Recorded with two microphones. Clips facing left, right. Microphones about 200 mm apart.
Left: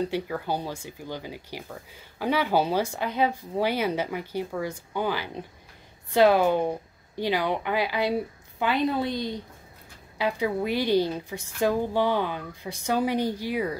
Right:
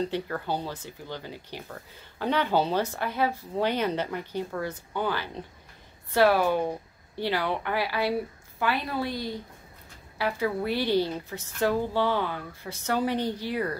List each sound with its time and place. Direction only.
0.0 s a woman's voice: 10° left (ahead or behind)